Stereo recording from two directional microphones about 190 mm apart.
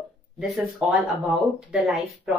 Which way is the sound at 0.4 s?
5° right (ahead or behind).